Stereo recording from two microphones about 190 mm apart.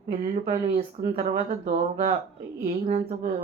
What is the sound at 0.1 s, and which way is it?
Speech, 45° right (ahead or behind).